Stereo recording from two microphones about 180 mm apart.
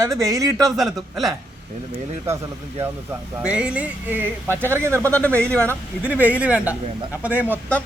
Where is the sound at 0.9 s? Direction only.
Centre (ahead or behind).